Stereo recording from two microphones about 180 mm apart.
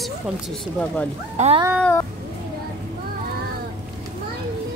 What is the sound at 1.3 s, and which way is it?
Speech, 35° right (ahead or behind).